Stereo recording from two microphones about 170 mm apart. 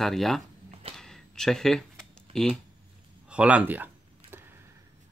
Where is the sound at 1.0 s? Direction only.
5° left (ahead or behind).